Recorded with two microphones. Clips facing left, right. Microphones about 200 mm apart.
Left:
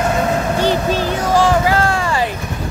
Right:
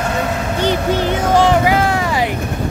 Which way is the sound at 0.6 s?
20° right (ahead or behind).